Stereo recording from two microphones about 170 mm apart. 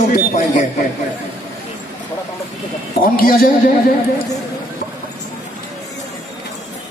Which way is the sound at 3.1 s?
60° left (ahead or behind).